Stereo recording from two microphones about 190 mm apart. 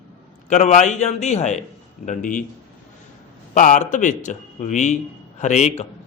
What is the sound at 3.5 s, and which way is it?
Speech, 40° left (ahead or behind).